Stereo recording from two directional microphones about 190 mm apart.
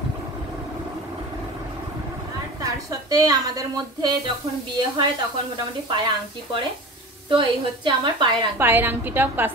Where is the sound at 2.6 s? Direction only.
20° right (ahead or behind).